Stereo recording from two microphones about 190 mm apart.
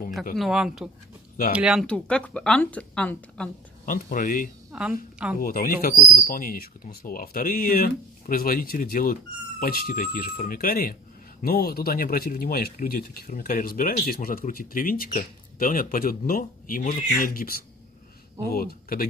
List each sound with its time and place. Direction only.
0.4 s speech: centre (ahead or behind)
3.8 s speech: 45° left (ahead or behind)
4.7 s a woman's voice: 5° right (ahead or behind)
5.4 s speech: 50° left (ahead or behind)